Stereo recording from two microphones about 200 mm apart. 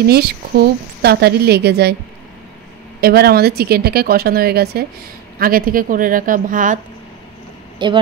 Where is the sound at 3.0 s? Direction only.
50° right (ahead or behind).